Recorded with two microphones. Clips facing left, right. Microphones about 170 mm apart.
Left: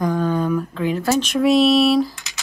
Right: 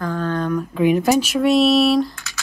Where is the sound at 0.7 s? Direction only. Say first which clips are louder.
Right 4 dB; 15° right (ahead or behind); by 2.2 s centre (ahead or behind).